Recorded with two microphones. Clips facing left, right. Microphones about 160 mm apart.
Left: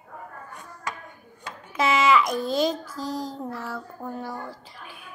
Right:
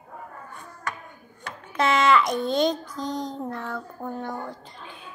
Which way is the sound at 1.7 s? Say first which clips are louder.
Even; 5° left (ahead or behind).